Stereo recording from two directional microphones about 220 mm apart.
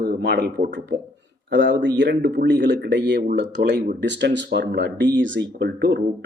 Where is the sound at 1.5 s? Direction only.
55° right (ahead or behind).